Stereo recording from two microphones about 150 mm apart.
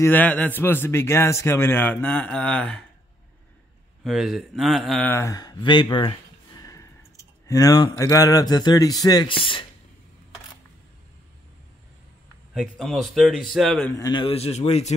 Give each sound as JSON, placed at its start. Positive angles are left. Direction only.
{"t": 0.0, "sound": "a man's voice", "side_deg": 10}
{"t": 4.0, "sound": "a man's voice", "side_deg": 0}
{"t": 5.0, "sound": "speech", "side_deg": 20}
{"t": 12.5, "sound": "a man's voice", "side_deg": 0}
{"t": 13.9, "sound": "a man's voice", "side_deg": 25}
{"t": 14.2, "sound": "speech", "side_deg": 45}